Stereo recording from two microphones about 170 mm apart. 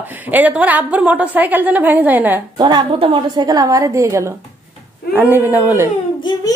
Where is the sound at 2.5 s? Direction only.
25° right (ahead or behind).